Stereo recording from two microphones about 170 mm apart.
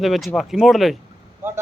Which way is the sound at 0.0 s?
Centre (ahead or behind).